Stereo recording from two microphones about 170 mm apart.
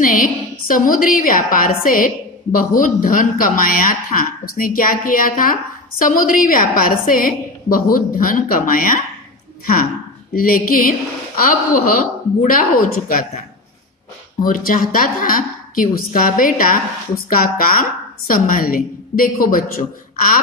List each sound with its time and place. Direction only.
0.0 s a woman's voice: 55° left (ahead or behind)
10.3 s a woman's voice: 60° left (ahead or behind)
14.4 s a woman's voice: 55° left (ahead or behind)